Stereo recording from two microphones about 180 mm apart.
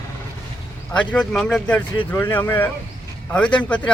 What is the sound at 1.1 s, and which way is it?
A man's voice, 5° left (ahead or behind).